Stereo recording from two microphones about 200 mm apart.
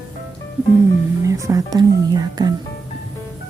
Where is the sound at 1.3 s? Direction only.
15° right (ahead or behind).